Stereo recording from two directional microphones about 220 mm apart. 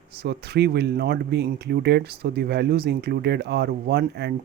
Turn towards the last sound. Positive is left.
turn(degrees=-45)  # may be behind; listen again after turning